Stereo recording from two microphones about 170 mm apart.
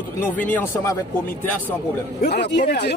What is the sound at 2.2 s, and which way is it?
Speech, 75° left (ahead or behind).